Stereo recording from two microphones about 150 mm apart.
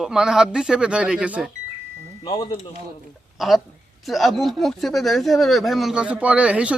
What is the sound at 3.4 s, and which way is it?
Speech, centre (ahead or behind).